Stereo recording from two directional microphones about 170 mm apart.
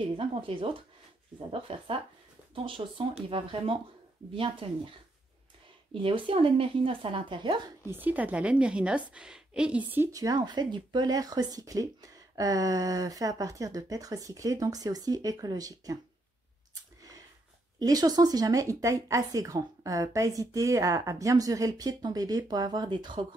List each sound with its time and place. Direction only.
0.0 s speech: 30° right (ahead or behind)
6.0 s speech: 30° right (ahead or behind)
7.8 s a woman's voice: 10° right (ahead or behind)
17.7 s a woman's voice: 20° right (ahead or behind)